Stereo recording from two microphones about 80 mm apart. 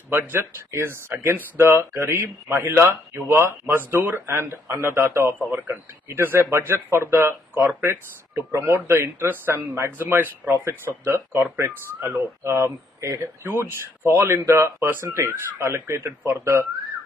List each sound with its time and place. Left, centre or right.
0.1 s speech: right
12.4 s speech: right